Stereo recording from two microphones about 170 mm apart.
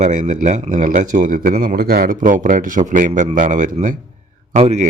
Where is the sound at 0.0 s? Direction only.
45° right (ahead or behind).